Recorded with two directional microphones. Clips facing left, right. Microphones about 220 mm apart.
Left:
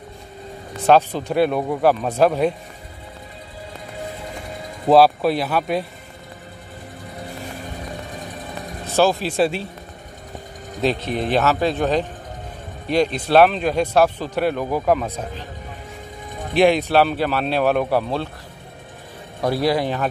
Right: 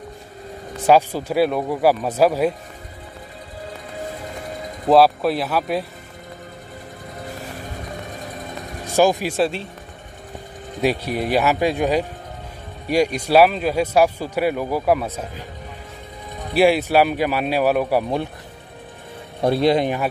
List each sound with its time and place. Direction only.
0.7 s speech: 10° right (ahead or behind)
4.8 s speech: centre (ahead or behind)
8.8 s speech: 15° right (ahead or behind)
9.4 s speech: 5° left (ahead or behind)
10.8 s speech: 10° right (ahead or behind)
16.5 s speech: 5° right (ahead or behind)
19.4 s a man's voice: 25° right (ahead or behind)